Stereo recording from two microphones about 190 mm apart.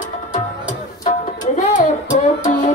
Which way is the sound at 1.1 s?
45° left (ahead or behind).